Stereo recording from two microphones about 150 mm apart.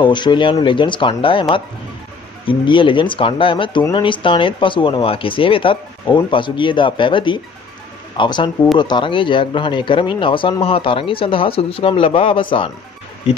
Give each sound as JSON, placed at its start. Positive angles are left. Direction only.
{"t": 0.0, "sound": "speech", "side_deg": 30}
{"t": 2.4, "sound": "speech", "side_deg": 35}